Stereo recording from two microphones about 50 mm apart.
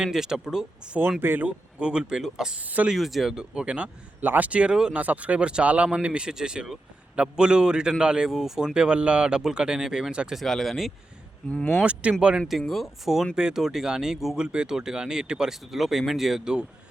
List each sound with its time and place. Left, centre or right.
0.0 s speech: centre
0.9 s speech: right
2.6 s speech: right
2.9 s speech: centre
3.3 s speech: centre
4.2 s speech: right
4.7 s speech: centre
4.9 s speech: right
10.4 s speech: centre
11.4 s speech: left
12.0 s speech: right
12.5 s speech: centre
13.3 s speech: centre